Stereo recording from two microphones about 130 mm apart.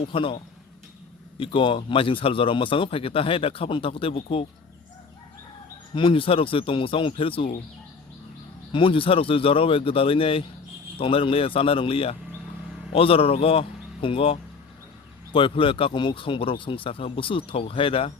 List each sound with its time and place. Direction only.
0.0 s speech: 45° left (ahead or behind)
5.9 s speech: 40° left (ahead or behind)
8.7 s speech: 40° left (ahead or behind)